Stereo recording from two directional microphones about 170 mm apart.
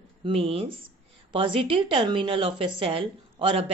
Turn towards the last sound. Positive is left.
turn(degrees=-30)  # may be behind; listen again after turning